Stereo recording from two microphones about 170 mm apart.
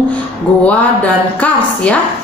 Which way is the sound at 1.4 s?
10° left (ahead or behind).